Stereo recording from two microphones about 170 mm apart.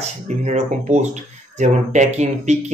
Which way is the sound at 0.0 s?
40° right (ahead or behind).